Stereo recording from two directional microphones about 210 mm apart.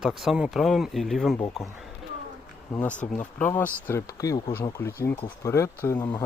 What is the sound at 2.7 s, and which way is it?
Speech, 5° left (ahead or behind).